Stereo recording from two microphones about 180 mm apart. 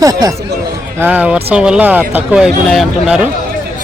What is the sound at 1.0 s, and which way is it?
Speech, 10° right (ahead or behind).